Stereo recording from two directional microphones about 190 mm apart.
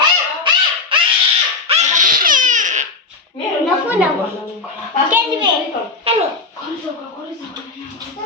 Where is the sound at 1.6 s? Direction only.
35° right (ahead or behind).